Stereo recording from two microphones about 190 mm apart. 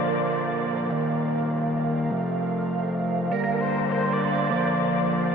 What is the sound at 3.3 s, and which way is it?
Music, centre (ahead or behind).